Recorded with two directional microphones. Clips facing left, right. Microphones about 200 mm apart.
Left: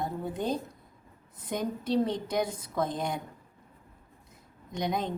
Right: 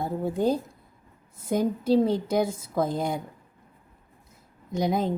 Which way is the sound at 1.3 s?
30° right (ahead or behind).